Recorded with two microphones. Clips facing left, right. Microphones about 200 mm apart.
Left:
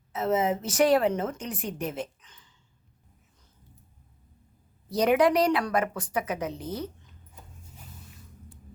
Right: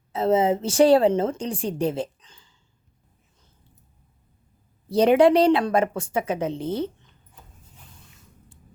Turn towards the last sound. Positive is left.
turn(degrees=-25)  # may be behind; listen again after turning